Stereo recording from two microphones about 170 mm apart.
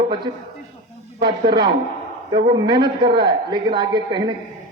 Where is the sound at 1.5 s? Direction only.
25° right (ahead or behind).